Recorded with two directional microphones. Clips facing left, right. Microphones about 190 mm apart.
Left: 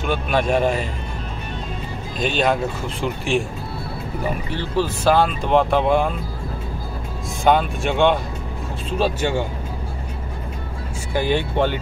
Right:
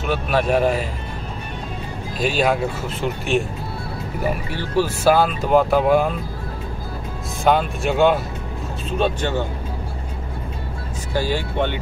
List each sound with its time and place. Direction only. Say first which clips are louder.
0.0 s speech: even; 5° right (ahead or behind)
2.1 s speech: right 1 dB; 5° right (ahead or behind)
4.5 s speech: even; 10° right (ahead or behind)
7.4 s speech: even; centre (ahead or behind)
11.1 s speech: left 2 dB; 20° left (ahead or behind)